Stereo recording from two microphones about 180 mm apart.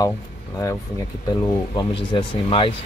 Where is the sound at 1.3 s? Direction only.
25° left (ahead or behind).